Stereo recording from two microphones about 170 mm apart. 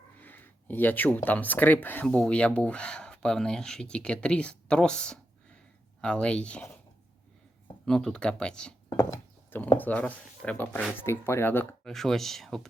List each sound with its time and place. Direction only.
0.2 s speech: 10° left (ahead or behind)
7.9 s speech: 5° left (ahead or behind)
8.9 s a sound: 20° left (ahead or behind)
9.7 s speech: 10° left (ahead or behind)